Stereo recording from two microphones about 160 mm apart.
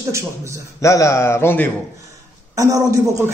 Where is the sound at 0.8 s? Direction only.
20° left (ahead or behind).